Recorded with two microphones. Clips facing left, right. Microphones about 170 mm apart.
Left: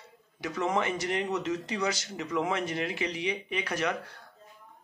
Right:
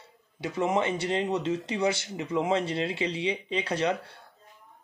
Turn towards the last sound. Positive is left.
turn(degrees=-30)  # may be behind; listen again after turning